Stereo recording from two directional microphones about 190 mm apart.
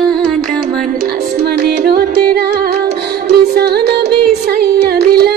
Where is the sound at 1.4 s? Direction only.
55° right (ahead or behind).